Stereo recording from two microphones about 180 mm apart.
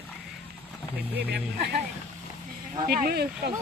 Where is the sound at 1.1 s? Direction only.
65° right (ahead or behind).